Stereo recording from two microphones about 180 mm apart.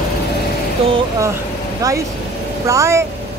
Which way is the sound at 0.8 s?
35° right (ahead or behind).